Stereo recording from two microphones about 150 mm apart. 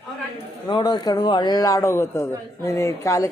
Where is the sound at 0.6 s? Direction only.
25° left (ahead or behind).